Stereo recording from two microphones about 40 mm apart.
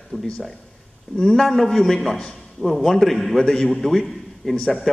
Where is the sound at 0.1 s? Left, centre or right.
Centre.